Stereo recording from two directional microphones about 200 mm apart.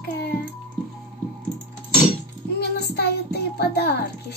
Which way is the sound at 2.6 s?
55° left (ahead or behind).